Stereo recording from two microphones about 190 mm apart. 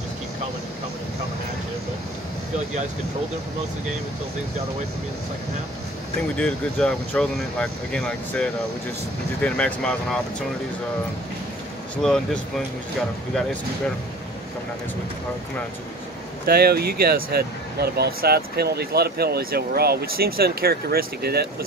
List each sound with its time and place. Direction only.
6.3 s speech: 5° left (ahead or behind)
12.0 s speech: 5° left (ahead or behind)
16.4 s speech: 55° right (ahead or behind)